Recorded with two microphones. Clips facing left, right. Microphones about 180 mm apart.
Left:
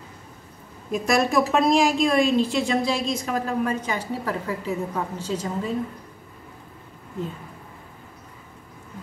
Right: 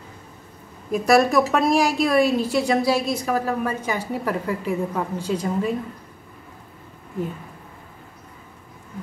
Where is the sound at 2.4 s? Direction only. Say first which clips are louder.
Right 2 dB; 40° right (ahead or behind).